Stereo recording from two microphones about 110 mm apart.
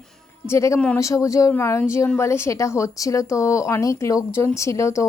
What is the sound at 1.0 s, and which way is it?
Speech, 30° left (ahead or behind).